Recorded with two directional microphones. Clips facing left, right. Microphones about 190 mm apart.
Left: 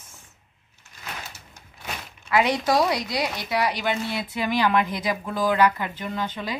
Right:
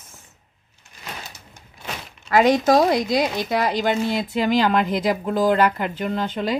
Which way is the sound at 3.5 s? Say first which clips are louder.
Right 2 dB; 50° right (ahead or behind).